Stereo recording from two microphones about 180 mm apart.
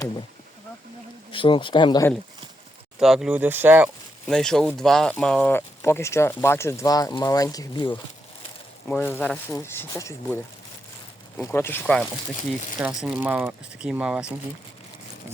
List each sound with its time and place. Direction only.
1.3 s speech: 30° left (ahead or behind)
3.0 s speech: centre (ahead or behind)
4.3 s speech: 5° left (ahead or behind); by 7.9 s 25° left (ahead or behind)
8.9 s speech: 10° left (ahead or behind)
9.6 s speech: 15° left (ahead or behind)
11.3 s speech: 15° left (ahead or behind)
12.8 s speech: 5° right (ahead or behind)